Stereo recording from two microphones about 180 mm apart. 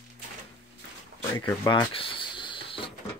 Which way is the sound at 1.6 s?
25° left (ahead or behind).